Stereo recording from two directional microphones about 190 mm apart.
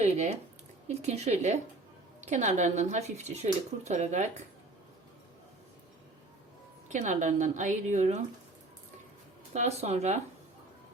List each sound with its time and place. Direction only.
0.0 s a sound: 35° right (ahead or behind)
0.9 s speech: 35° right (ahead or behind)
6.8 s speech: 40° right (ahead or behind)
9.5 s speech: 35° right (ahead or behind)